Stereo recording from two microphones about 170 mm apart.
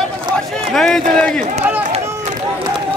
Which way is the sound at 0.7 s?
5° left (ahead or behind).